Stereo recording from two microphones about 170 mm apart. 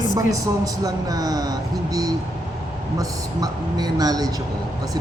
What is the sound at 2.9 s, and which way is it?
Speech, 20° right (ahead or behind).